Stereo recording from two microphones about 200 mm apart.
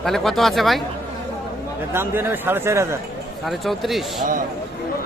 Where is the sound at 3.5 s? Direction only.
Centre (ahead or behind).